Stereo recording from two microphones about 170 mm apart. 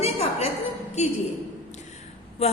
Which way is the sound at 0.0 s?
40° left (ahead or behind).